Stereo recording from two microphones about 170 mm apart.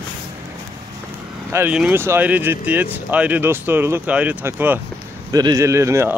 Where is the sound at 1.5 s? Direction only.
10° right (ahead or behind).